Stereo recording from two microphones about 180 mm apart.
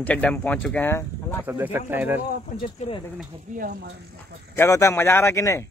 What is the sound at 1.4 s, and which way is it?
Speech, 10° right (ahead or behind).